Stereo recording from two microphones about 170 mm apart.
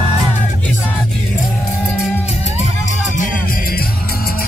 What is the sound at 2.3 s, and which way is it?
Music, 40° left (ahead or behind).